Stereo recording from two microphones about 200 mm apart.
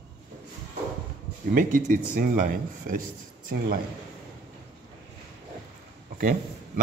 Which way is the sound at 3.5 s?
55° right (ahead or behind).